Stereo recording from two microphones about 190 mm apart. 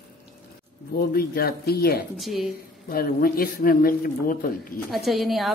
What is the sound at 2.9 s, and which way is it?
A man's voice, 50° left (ahead or behind).